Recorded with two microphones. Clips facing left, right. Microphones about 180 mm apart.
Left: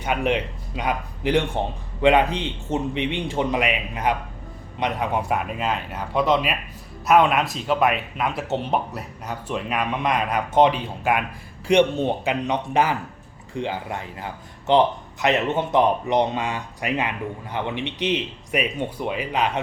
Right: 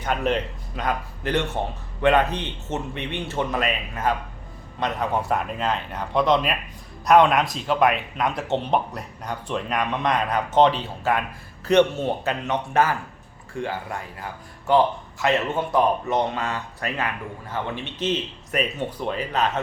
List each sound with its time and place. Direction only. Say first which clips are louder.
0.0 s speech: left 1 dB; 10° left (ahead or behind)